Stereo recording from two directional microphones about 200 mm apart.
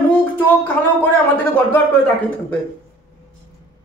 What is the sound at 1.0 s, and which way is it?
Speech, 10° left (ahead or behind).